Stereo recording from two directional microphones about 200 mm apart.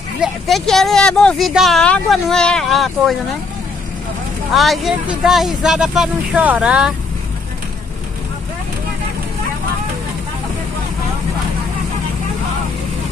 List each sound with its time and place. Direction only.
0.2 s speech: centre (ahead or behind)
4.6 s speech: centre (ahead or behind)